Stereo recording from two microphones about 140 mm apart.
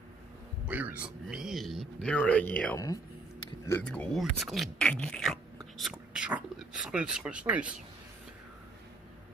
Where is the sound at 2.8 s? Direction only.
25° left (ahead or behind).